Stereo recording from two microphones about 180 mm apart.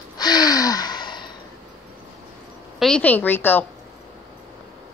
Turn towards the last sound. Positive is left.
turn(degrees=10)  # may be behind; listen again after turning